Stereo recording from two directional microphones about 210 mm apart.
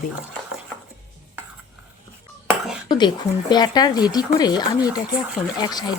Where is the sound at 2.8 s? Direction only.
20° left (ahead or behind).